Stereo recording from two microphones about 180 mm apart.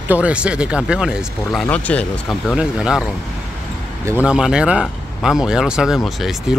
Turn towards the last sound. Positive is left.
turn(degrees=0)  # may be behind; listen again after turning